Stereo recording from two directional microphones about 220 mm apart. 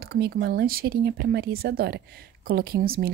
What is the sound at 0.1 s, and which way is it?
Speech, 45° right (ahead or behind).